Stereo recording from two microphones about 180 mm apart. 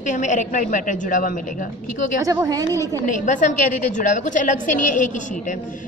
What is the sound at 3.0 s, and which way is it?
A woman's voice, 45° left (ahead or behind).